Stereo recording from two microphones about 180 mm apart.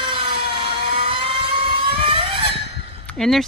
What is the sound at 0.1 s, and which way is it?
Vehicle, 30° right (ahead or behind).